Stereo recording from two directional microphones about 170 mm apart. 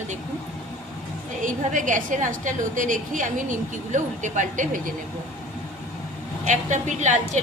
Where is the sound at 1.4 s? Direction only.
50° right (ahead or behind).